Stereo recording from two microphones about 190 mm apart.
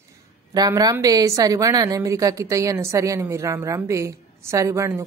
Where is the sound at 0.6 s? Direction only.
20° right (ahead or behind).